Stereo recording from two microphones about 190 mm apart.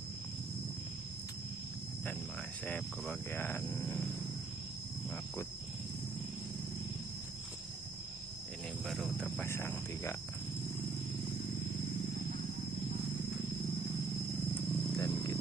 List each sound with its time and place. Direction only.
2.6 s speech: 5° left (ahead or behind)
8.9 s speech: centre (ahead or behind)
9.5 s speech: 15° left (ahead or behind)
14.9 s wild animals: 20° left (ahead or behind)